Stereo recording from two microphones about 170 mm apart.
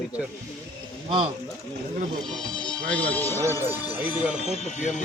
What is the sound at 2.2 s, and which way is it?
Speech, 5° left (ahead or behind).